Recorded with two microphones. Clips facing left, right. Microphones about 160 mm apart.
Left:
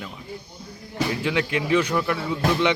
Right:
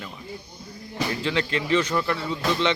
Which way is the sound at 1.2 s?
10° left (ahead or behind).